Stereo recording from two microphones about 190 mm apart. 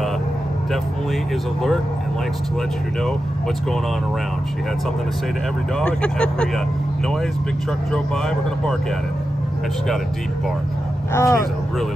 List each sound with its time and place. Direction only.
5.8 s speech: 5° left (ahead or behind)
11.1 s speech: 15° left (ahead or behind)